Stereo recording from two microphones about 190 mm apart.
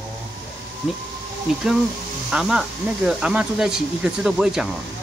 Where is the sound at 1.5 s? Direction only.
5° right (ahead or behind).